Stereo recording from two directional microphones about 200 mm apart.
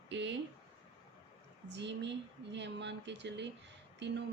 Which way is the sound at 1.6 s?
60° right (ahead or behind).